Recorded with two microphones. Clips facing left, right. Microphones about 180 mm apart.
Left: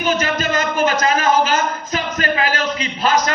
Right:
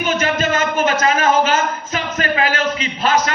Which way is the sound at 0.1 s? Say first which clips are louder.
Right 1 dB; 35° left (ahead or behind).